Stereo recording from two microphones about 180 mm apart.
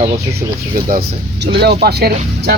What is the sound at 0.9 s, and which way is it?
Speech, 60° right (ahead or behind).